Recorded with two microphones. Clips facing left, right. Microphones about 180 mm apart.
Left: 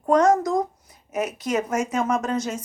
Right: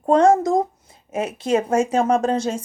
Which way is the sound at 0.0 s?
25° right (ahead or behind).